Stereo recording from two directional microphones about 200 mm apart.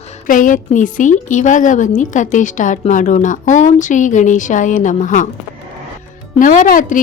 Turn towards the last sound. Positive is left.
turn(degrees=40)  # may be behind; listen again after turning